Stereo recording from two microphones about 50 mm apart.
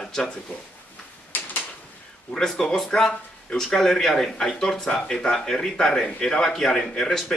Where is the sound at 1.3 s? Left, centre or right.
Left.